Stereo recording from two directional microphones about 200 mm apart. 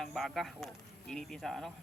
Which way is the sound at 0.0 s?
Centre (ahead or behind).